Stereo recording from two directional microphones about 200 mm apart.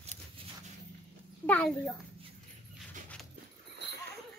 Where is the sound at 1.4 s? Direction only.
10° left (ahead or behind).